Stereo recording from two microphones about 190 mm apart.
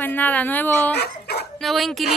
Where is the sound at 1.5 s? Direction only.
Centre (ahead or behind).